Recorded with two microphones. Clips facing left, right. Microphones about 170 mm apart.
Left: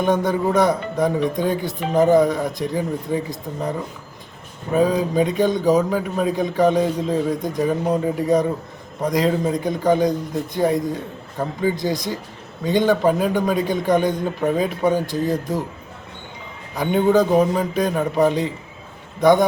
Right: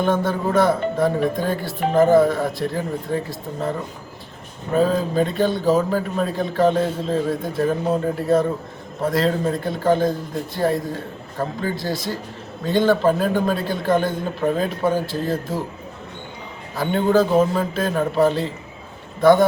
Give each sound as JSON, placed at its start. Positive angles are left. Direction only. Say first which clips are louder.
{"t": 0.0, "sound": "a man's voice", "louder": "left 1 dB", "side_deg": 15}
{"t": 16.7, "sound": "a man's voice", "louder": "left 1 dB", "side_deg": 15}